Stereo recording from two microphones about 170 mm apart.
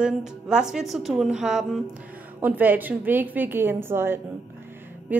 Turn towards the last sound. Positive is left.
turn(degrees=-15)  # may be behind; listen again after turning